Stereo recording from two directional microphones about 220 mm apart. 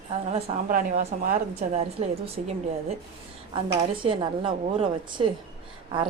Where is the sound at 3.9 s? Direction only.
25° right (ahead or behind).